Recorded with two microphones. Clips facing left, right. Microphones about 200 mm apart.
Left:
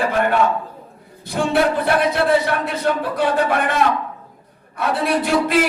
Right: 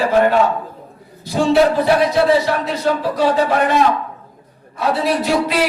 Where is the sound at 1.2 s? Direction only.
55° left (ahead or behind).